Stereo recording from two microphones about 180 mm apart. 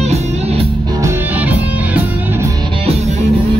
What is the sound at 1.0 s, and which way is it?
Music, 10° right (ahead or behind).